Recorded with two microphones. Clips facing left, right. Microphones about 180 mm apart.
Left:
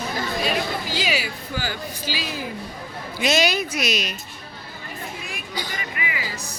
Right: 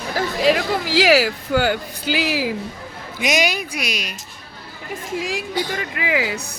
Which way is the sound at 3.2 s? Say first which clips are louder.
Even; 15° right (ahead or behind).